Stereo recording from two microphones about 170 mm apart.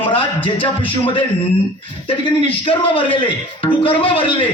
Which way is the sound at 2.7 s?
30° left (ahead or behind).